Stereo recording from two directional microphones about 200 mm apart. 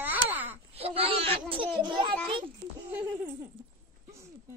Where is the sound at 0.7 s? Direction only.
30° right (ahead or behind).